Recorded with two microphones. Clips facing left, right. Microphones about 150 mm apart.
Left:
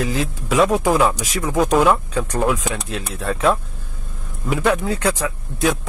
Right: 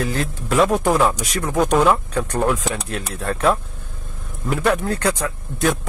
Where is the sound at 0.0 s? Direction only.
Centre (ahead or behind).